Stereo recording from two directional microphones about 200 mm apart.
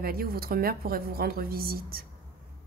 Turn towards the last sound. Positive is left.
turn(degrees=-50)  # may be behind; listen again after turning